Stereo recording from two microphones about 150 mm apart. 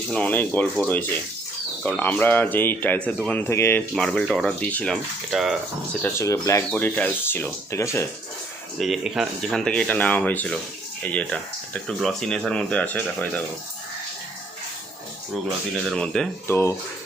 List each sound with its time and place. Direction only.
0.1 s speech: 10° left (ahead or behind)
3.9 s speech: 5° left (ahead or behind)
6.0 s speech: 20° left (ahead or behind)
6.7 s speech: 10° left (ahead or behind)
8.8 s speech: centre (ahead or behind)
15.9 s speech: 5° left (ahead or behind)
16.5 s speech: 15° left (ahead or behind)